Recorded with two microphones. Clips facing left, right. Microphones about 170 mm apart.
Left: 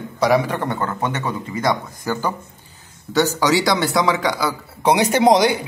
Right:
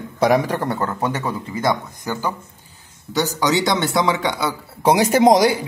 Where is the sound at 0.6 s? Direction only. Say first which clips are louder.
Right 1 dB; 5° right (ahead or behind).